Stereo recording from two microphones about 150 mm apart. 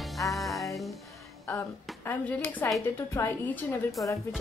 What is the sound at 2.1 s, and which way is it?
A woman's voice, 10° left (ahead or behind).